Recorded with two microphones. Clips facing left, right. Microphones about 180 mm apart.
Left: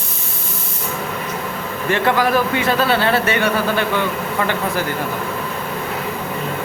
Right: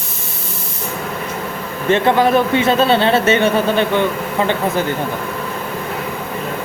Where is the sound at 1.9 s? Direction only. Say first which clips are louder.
Right 4 dB; 25° right (ahead or behind).